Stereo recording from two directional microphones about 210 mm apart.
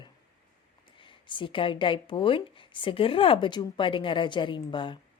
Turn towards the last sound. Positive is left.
turn(degrees=20)  # may be behind; listen again after turning